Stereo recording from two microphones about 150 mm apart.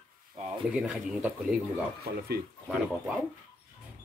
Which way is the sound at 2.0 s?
90° right.